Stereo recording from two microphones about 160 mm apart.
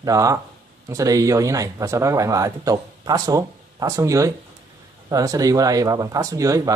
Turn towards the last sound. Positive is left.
turn(degrees=-20)  # may be behind; listen again after turning